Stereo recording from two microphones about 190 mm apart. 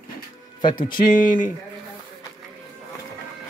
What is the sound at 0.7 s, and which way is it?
Speech, 45° left (ahead or behind).